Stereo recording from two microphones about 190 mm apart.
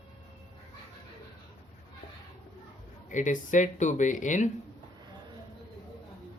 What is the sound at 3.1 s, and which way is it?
Speech, 40° left (ahead or behind).